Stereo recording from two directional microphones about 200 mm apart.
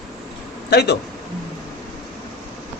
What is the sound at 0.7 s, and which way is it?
Speech, 55° left (ahead or behind).